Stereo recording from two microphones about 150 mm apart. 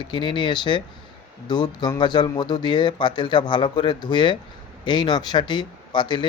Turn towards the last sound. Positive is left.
turn(degrees=30)  # may be behind; listen again after turning